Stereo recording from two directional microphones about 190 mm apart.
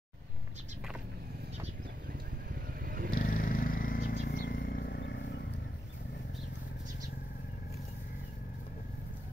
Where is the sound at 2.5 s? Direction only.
50° right (ahead or behind).